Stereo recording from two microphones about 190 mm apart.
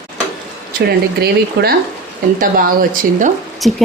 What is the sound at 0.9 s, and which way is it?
Speech, 55° right (ahead or behind).